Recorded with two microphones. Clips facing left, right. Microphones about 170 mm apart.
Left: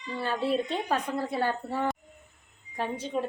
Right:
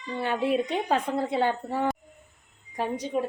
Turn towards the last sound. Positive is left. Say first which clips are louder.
# right 3 dB
turn(degrees=-10)  # may be behind; listen again after turning